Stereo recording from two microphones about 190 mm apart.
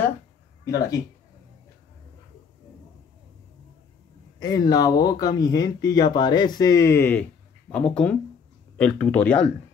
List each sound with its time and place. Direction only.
0.7 s speech: 20° left (ahead or behind)
4.4 s speech: 20° left (ahead or behind)